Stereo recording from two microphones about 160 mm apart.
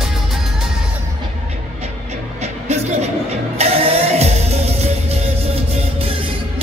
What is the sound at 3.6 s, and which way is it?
Music, 40° right (ahead or behind).